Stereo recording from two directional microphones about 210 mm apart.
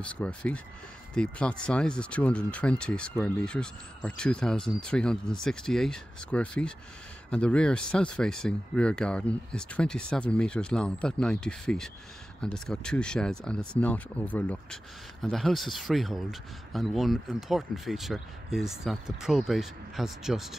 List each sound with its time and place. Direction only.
0.0 s speech: 5° left (ahead or behind)